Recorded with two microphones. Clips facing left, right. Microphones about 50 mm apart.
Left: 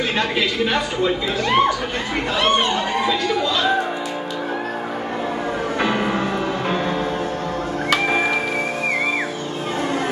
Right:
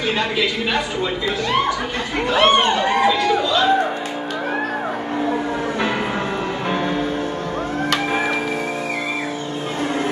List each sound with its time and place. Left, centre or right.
2.3 s speech: right